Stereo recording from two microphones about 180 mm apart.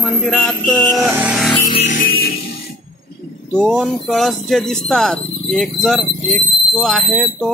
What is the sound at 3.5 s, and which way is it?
Speech, centre (ahead or behind).